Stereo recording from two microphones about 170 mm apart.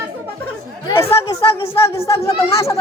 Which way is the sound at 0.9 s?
20° left (ahead or behind).